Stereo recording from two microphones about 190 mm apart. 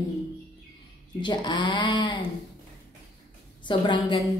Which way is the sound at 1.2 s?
25° left (ahead or behind).